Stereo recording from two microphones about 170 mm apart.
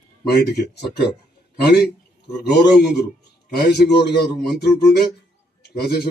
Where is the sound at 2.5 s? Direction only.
75° left (ahead or behind).